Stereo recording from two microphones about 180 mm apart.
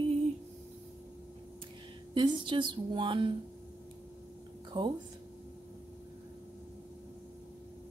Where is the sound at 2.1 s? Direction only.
25° right (ahead or behind).